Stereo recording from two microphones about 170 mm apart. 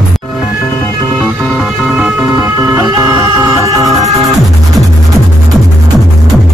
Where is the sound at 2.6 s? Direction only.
15° right (ahead or behind).